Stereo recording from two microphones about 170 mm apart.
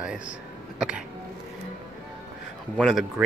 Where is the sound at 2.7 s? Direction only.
Centre (ahead or behind).